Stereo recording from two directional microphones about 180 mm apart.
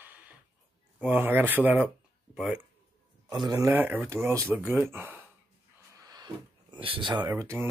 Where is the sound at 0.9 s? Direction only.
10° right (ahead or behind).